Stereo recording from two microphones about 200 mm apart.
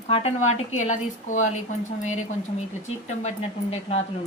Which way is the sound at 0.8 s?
35° left (ahead or behind).